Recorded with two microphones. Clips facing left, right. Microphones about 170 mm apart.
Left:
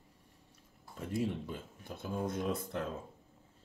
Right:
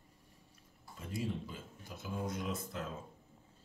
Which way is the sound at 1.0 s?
65° left (ahead or behind).